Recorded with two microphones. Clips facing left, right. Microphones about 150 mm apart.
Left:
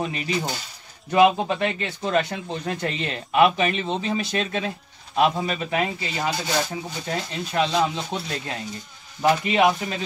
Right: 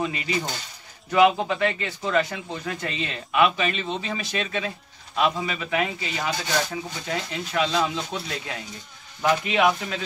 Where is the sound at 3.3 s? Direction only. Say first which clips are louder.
Left 3 dB; 45° left (ahead or behind).